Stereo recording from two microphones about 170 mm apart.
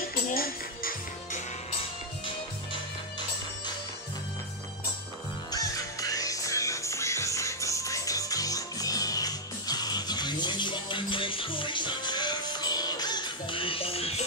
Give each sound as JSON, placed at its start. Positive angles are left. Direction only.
{"t": 0.1, "sound": "music", "side_deg": 60}
{"t": 2.2, "sound": "music", "side_deg": 30}
{"t": 5.5, "sound": "music", "side_deg": 20}